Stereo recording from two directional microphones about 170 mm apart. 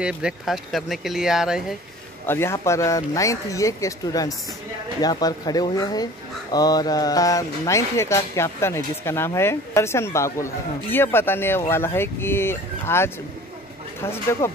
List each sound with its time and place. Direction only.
0.0 s speech: 5° right (ahead or behind)
2.2 s speech: 15° left (ahead or behind)